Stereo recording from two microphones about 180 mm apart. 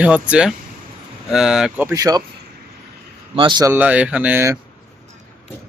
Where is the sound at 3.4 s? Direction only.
25° right (ahead or behind).